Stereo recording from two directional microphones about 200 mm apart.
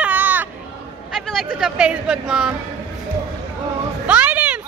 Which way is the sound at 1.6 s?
5° right (ahead or behind).